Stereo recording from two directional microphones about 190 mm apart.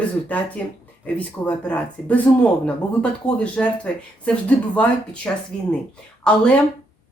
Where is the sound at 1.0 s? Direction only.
5° left (ahead or behind).